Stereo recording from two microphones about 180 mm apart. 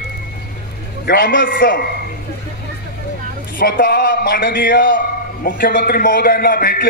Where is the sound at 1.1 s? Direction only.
55° left (ahead or behind).